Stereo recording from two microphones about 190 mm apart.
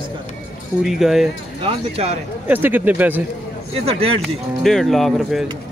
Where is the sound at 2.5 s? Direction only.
10° right (ahead or behind).